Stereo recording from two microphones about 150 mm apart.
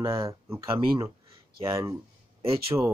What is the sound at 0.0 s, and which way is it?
Speech, 20° right (ahead or behind).